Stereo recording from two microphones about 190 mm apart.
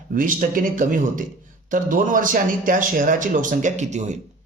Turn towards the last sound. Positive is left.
turn(degrees=-40)  # may be behind; listen again after turning